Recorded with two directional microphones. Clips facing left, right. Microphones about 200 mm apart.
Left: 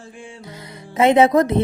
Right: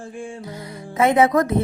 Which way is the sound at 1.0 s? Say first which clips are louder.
Left 3 dB; 25° left (ahead or behind).